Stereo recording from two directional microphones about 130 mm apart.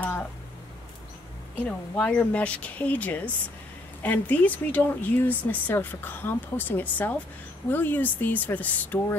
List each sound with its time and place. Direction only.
1.6 s speech: 15° left (ahead or behind)